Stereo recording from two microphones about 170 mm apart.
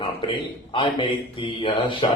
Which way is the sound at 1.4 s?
30° left (ahead or behind).